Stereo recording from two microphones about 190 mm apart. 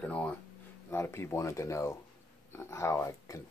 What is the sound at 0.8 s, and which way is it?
Speech, 15° left (ahead or behind).